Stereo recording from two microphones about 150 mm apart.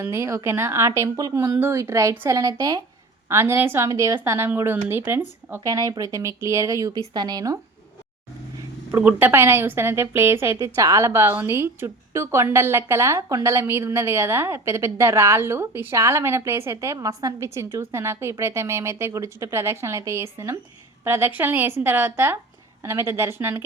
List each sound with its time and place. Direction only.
0.0 s a woman's voice: 20° right (ahead or behind)
8.9 s a woman's voice: 10° right (ahead or behind)